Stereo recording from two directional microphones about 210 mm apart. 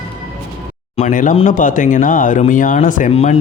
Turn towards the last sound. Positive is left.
turn(degrees=30)  # may be behind; listen again after turning